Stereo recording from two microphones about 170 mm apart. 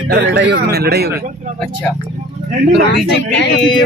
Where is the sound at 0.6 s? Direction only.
75° right (ahead or behind).